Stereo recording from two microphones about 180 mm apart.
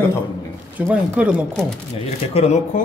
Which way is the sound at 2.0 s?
35° left (ahead or behind).